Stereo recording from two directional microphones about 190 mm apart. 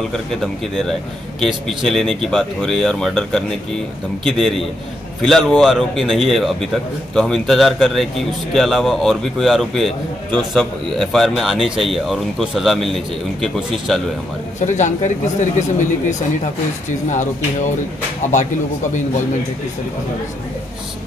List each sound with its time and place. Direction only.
0.1 s a man's voice: centre (ahead or behind)
14.6 s speech: 40° left (ahead or behind)